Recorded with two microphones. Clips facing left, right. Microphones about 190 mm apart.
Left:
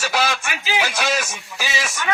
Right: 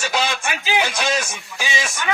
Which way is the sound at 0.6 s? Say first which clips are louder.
Right 2 dB; 20° right (ahead or behind).